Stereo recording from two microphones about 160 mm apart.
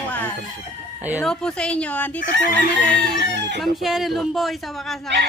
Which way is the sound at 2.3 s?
90° right.